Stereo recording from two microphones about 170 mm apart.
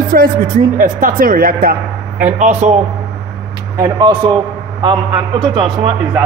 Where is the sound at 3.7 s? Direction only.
20° right (ahead or behind).